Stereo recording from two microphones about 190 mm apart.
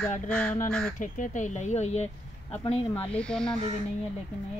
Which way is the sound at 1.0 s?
40° left (ahead or behind).